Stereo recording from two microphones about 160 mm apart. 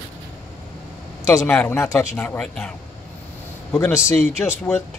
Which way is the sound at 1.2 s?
15° left (ahead or behind).